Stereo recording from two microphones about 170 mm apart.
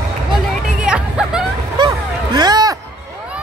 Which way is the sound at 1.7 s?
25° right (ahead or behind).